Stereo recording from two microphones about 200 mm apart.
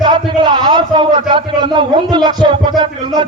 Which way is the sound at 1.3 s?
25° right (ahead or behind).